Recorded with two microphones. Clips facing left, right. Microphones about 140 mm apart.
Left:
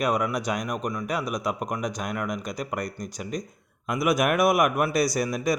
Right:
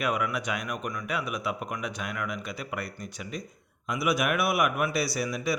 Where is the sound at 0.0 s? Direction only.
35° left (ahead or behind).